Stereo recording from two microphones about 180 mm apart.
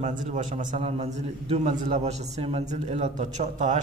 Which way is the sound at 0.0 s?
45° right (ahead or behind).